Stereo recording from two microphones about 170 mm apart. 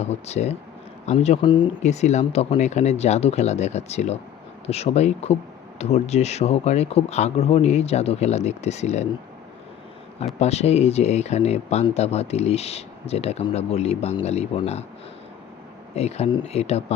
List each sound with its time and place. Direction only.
0.0 s speech: 40° left (ahead or behind)
1.8 s speech: 40° left (ahead or behind)
10.4 s speech: 40° left (ahead or behind)
16.0 s speech: 40° left (ahead or behind)